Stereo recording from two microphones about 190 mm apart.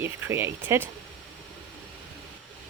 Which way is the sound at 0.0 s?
10° right (ahead or behind).